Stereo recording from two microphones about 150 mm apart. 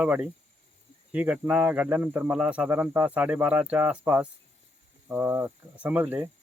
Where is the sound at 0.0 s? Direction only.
10° right (ahead or behind).